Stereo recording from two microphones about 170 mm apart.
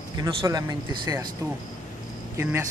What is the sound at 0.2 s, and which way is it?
Speech, 20° right (ahead or behind).